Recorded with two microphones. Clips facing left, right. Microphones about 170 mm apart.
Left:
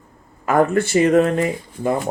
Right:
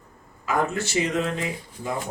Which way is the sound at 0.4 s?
55° left (ahead or behind).